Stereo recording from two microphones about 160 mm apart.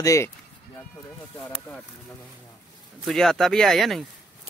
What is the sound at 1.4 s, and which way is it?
Speech, 5° left (ahead or behind).